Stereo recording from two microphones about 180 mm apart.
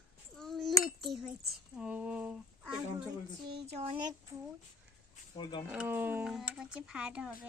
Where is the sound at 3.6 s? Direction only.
35° right (ahead or behind).